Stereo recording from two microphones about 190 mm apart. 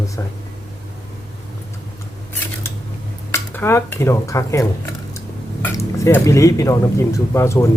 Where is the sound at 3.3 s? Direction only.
10° left (ahead or behind).